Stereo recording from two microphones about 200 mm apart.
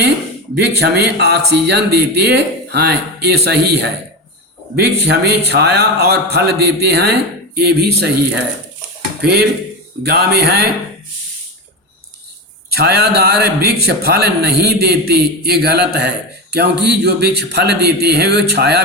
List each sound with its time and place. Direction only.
0.5 s a man's voice: 55° right (ahead or behind)
12.7 s a man's voice: 55° right (ahead or behind)